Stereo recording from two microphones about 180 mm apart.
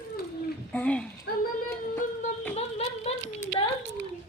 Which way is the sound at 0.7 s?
5° left (ahead or behind).